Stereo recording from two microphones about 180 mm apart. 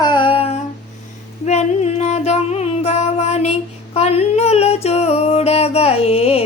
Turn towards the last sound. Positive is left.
turn(degrees=35)  # may be behind; listen again after turning